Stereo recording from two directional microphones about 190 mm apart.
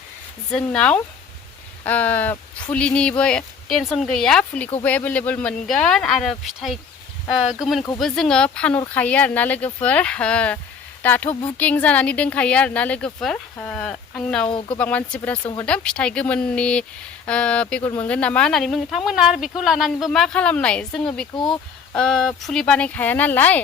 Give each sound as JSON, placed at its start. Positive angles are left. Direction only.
{"t": 0.5, "sound": "speech", "side_deg": 5}
{"t": 21.3, "sound": "speech", "side_deg": 25}
{"t": 21.9, "sound": "speech", "side_deg": 5}